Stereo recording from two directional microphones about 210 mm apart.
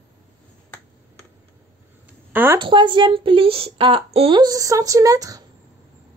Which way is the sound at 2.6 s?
20° right (ahead or behind).